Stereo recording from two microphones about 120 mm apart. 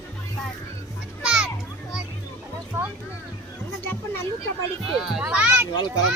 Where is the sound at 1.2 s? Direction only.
5° right (ahead or behind).